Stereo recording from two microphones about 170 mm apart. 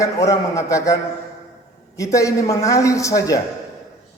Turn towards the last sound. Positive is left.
turn(degrees=20)  # may be behind; listen again after turning